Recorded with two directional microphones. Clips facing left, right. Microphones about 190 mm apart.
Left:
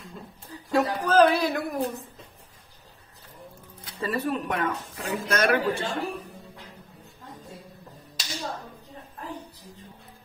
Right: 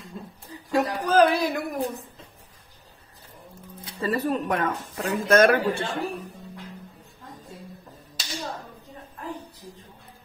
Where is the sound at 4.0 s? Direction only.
40° right (ahead or behind).